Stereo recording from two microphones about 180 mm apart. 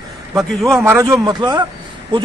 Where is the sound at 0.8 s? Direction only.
15° right (ahead or behind).